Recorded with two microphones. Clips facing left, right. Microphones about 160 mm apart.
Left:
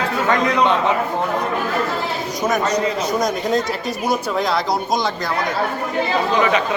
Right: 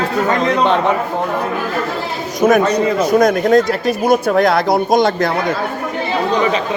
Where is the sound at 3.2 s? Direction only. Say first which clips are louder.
Right 10 dB; 55° right (ahead or behind).